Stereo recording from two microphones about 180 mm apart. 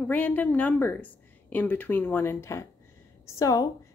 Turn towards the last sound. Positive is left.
turn(degrees=20)  # may be behind; listen again after turning